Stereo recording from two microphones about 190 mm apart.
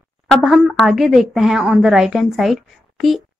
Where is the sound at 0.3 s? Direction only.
Centre (ahead or behind).